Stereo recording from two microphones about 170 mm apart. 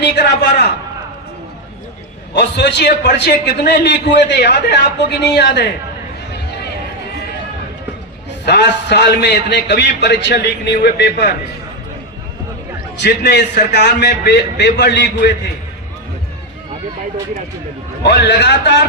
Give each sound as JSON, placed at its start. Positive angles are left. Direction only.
{"t": 0.0, "sound": "a man's voice", "side_deg": 90}
{"t": 2.3, "sound": "a man's voice", "side_deg": 85}
{"t": 8.4, "sound": "a man's voice", "side_deg": 80}
{"t": 13.0, "sound": "a man's voice", "side_deg": 90}
{"t": 18.0, "sound": "a man's voice", "side_deg": 85}